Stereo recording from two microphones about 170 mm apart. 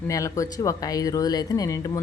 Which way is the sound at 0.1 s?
20° left (ahead or behind).